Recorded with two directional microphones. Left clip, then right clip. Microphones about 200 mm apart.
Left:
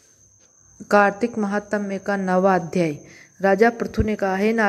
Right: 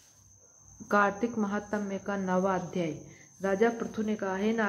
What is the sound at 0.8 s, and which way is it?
A woman's voice, 25° left (ahead or behind).